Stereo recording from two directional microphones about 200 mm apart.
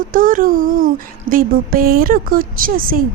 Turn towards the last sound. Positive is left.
turn(degrees=-45)  # may be behind; listen again after turning